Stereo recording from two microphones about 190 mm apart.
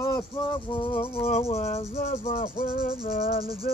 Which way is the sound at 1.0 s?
10° left (ahead or behind).